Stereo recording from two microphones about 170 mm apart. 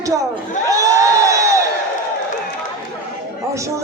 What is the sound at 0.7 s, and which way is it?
Crowd, 20° right (ahead or behind).